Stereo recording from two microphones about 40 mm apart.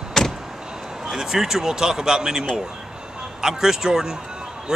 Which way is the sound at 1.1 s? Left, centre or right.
Centre.